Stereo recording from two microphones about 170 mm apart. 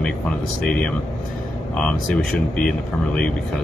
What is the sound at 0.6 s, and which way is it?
Speech, 5° left (ahead or behind).